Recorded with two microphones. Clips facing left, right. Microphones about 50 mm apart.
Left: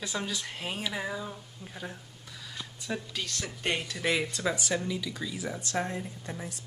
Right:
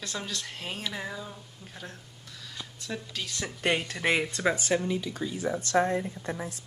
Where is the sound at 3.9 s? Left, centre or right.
Right.